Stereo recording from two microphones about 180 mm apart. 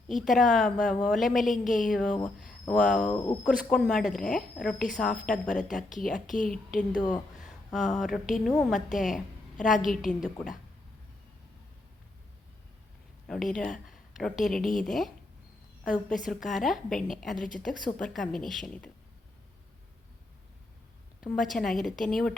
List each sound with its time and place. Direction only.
0.1 s a woman's voice: centre (ahead or behind)
3.1 s speech: 20° left (ahead or behind)
3.4 s a woman's voice: 5° left (ahead or behind)
5.6 s speech: 45° left (ahead or behind)
6.0 s a woman's voice: centre (ahead or behind)
6.2 s speech: 45° left (ahead or behind)
6.5 s a woman's voice: 5° left (ahead or behind)
7.8 s a sound: 40° left (ahead or behind)
8.0 s a woman's voice: centre (ahead or behind)
13.2 s a woman's voice: centre (ahead or behind)
21.2 s a woman's voice: centre (ahead or behind)